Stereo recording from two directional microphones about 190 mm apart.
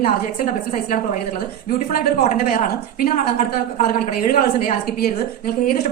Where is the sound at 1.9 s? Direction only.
50° left (ahead or behind).